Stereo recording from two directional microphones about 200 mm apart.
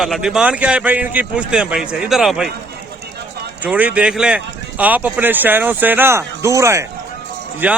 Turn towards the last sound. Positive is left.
turn(degrees=-10)  # may be behind; listen again after turning